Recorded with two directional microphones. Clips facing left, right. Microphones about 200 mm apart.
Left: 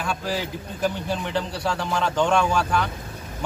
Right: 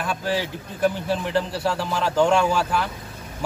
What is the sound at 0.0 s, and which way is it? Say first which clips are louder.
A man's voice: right 2 dB; centre (ahead or behind).